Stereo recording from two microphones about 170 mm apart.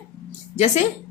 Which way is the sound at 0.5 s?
45° left (ahead or behind).